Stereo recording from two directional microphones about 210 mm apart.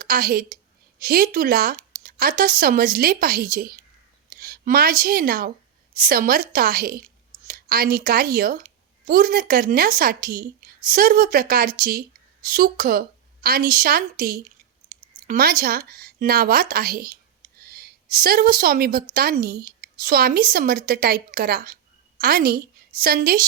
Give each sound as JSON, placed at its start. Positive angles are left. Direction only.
{"t": 0.0, "sound": "a woman's voice", "side_deg": -45}